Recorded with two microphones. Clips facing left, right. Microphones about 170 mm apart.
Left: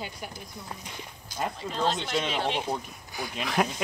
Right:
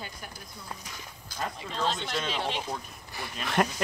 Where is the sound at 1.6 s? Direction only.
5° left (ahead or behind).